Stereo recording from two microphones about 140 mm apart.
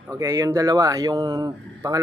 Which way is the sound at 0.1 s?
20° right (ahead or behind).